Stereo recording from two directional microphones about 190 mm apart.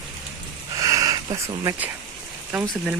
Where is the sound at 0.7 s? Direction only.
20° right (ahead or behind).